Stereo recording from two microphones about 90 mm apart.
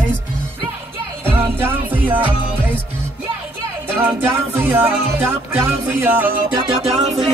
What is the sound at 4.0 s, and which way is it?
Speech, 25° right (ahead or behind).